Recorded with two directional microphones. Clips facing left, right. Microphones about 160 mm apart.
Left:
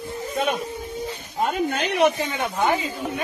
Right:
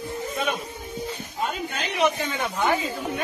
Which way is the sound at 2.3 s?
15° left (ahead or behind).